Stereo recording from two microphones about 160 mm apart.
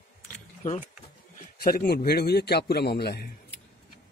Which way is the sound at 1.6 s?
70° left (ahead or behind).